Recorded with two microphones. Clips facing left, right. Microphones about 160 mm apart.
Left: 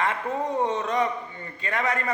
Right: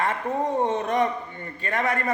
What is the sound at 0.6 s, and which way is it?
A man's voice, 55° right (ahead or behind).